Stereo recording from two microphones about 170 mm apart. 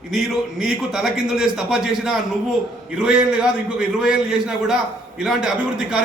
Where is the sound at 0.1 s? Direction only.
Centre (ahead or behind).